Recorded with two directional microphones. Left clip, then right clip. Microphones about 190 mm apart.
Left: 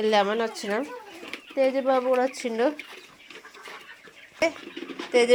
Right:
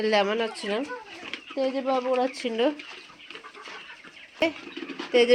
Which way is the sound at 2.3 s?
5° right (ahead or behind).